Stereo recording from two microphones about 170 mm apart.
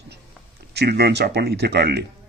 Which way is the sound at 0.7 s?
70° right (ahead or behind).